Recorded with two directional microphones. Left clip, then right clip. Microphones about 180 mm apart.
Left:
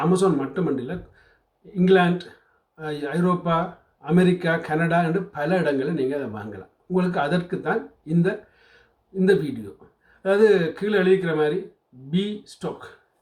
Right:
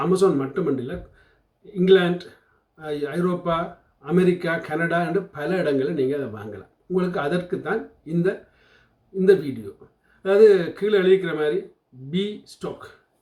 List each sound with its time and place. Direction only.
0.1 s speech: 20° left (ahead or behind)
10.2 s speech: 15° left (ahead or behind)